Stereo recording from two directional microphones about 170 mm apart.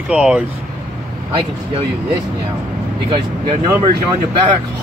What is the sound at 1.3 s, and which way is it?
Speech, 35° right (ahead or behind).